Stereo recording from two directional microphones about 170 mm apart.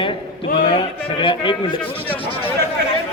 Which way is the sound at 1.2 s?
30° left (ahead or behind).